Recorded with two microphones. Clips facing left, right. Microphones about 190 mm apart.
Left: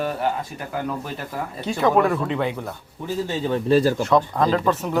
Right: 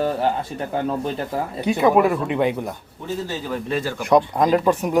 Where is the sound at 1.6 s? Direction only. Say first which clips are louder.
Right 2 dB; 15° right (ahead or behind).